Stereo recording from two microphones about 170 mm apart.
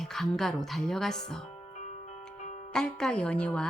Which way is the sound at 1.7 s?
45° left (ahead or behind).